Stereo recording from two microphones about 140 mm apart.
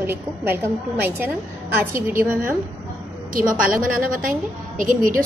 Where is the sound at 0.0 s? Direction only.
15° right (ahead or behind).